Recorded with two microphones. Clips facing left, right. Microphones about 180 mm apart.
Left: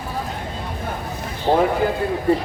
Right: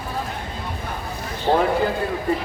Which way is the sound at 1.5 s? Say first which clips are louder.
Left 1 dB; 15° left (ahead or behind).